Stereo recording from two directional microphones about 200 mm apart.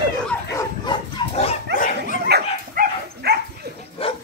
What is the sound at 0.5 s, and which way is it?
Dog, 25° left (ahead or behind).